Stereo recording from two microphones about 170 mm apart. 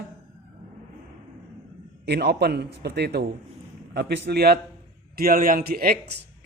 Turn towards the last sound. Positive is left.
turn(degrees=-60)  # may be behind; listen again after turning